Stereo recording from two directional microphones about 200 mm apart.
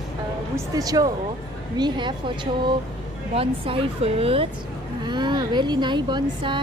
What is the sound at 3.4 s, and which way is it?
A woman's voice, 25° right (ahead or behind).